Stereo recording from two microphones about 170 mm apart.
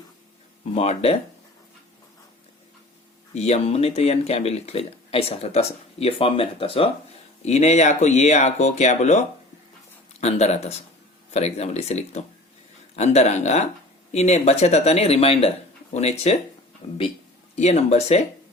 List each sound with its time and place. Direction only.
0.7 s speech: 40° left (ahead or behind)
3.3 s speech: 40° left (ahead or behind)
17.5 s speech: 40° left (ahead or behind)